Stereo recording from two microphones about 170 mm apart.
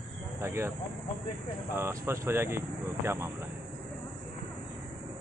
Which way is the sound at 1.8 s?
15° right (ahead or behind).